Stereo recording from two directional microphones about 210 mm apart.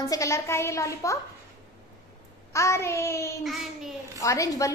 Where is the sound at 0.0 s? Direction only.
15° left (ahead or behind).